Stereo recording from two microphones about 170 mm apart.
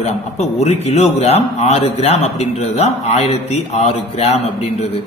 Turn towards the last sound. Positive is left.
turn(degrees=40)  # may be behind; listen again after turning